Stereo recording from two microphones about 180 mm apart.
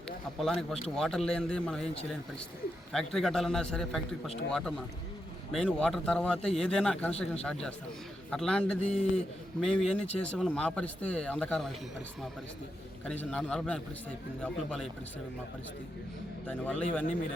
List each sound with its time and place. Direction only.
0.3 s speech: 5° left (ahead or behind)
2.9 s speech: 5° left (ahead or behind)
8.9 s a man's voice: 35° left (ahead or behind)
9.6 s speech: 5° left (ahead or behind)
13.1 s speech: 5° left (ahead or behind)
16.5 s a man's voice: 5° left (ahead or behind)